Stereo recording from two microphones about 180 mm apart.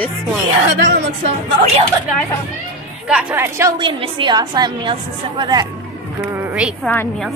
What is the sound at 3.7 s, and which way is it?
A woman's voice, 25° right (ahead or behind).